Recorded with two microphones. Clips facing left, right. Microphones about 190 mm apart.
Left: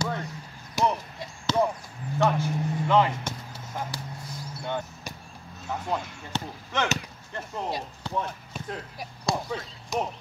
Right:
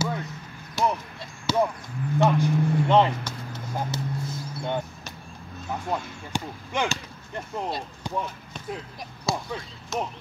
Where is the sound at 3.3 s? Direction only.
25° left (ahead or behind).